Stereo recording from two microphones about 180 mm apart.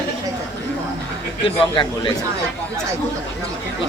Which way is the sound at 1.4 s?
25° left (ahead or behind).